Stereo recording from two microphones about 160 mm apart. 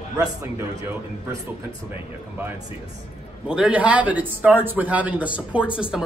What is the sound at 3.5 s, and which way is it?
A man's voice, 5° right (ahead or behind).